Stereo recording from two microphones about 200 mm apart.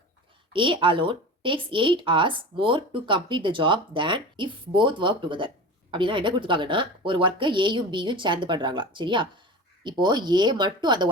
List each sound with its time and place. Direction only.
0.5 s a woman's voice: 25° right (ahead or behind)